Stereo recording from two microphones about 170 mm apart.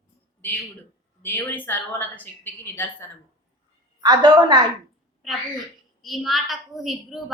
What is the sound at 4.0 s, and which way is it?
Speech, 25° right (ahead or behind).